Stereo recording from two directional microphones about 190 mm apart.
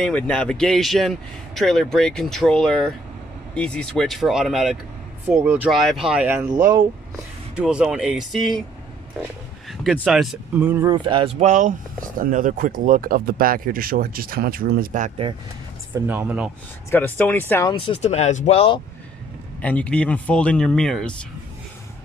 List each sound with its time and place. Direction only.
0.0 s speech: 5° left (ahead or behind); by 5.7 s 10° right (ahead or behind)
5.7 s speech: centre (ahead or behind)
7.5 s speech: 5° right (ahead or behind)
9.7 s speech: centre (ahead or behind)
11.1 s speech: 25° right (ahead or behind)
15.9 s speech: 10° right (ahead or behind)
16.9 s speech: 10° left (ahead or behind)
17.6 s speech: 30° left (ahead or behind)
19.6 s speech: 5° left (ahead or behind)